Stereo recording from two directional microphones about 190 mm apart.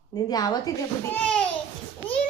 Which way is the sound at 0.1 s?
20° left (ahead or behind).